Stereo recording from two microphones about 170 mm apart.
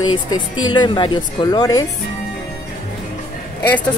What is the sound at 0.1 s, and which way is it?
Speech, 25° left (ahead or behind).